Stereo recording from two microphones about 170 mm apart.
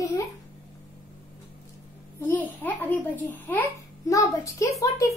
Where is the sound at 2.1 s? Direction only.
10° left (ahead or behind).